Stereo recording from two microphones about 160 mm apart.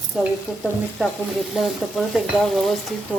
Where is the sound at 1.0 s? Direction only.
Centre (ahead or behind).